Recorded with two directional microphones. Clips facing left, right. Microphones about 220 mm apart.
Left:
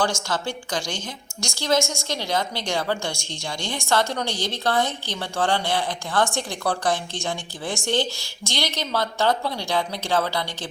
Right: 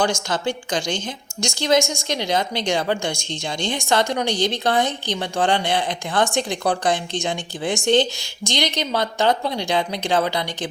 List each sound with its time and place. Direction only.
0.0 s a woman's voice: 15° right (ahead or behind)